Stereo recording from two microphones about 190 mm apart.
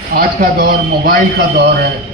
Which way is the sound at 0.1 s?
50° right (ahead or behind).